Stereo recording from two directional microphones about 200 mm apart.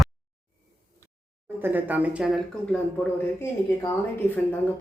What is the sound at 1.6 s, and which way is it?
Speech, 10° right (ahead or behind).